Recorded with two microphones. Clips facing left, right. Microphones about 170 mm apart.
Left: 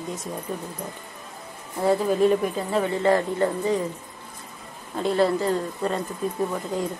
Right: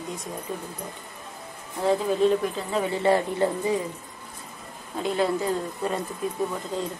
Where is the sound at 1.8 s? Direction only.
10° left (ahead or behind).